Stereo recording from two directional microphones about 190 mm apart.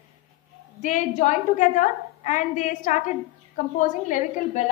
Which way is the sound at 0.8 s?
40° left (ahead or behind).